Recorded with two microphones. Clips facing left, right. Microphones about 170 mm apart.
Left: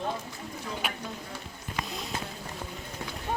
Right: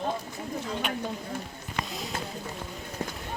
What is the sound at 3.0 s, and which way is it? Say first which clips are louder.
Run: right 5 dB; 45° right (ahead or behind).